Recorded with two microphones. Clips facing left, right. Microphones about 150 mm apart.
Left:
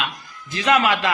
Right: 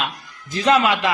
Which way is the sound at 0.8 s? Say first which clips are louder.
Right 1 dB; 20° right (ahead or behind).